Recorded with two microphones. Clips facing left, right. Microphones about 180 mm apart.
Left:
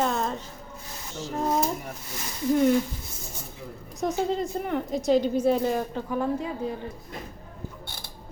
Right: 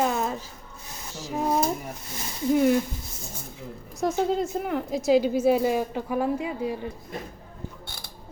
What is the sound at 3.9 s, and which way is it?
A woman's voice, centre (ahead or behind).